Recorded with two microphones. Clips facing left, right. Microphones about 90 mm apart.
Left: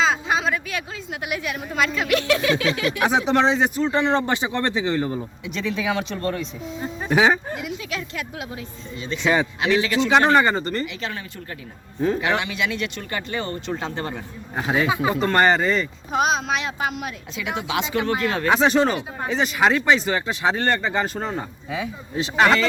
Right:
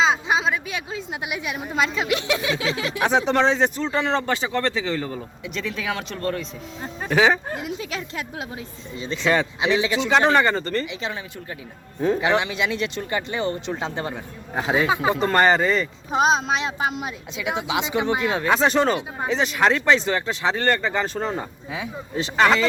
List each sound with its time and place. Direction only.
0.0 s a sound: 20° right (ahead or behind)
1.2 s speech: 20° right (ahead or behind)
3.0 s speech: 5° left (ahead or behind)
3.9 s speech: 20° left (ahead or behind)
5.5 s speech: centre (ahead or behind)
7.4 s speech: 35° right (ahead or behind)
9.2 s speech: 15° left (ahead or behind)
9.6 s speech: 20° right (ahead or behind)
10.1 s speech: 5° left (ahead or behind)
12.2 s speech: 25° right (ahead or behind)
13.1 s speech: 15° right (ahead or behind); by 15.9 s centre (ahead or behind)
16.1 s speech: 30° right (ahead or behind)
18.4 s speech: centre (ahead or behind)